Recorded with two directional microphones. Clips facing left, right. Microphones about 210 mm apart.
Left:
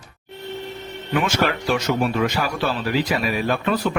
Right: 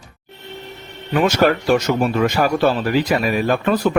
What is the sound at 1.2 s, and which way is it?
A man's voice, 45° right (ahead or behind).